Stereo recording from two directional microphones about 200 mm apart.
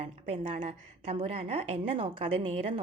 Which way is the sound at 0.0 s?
35° right (ahead or behind).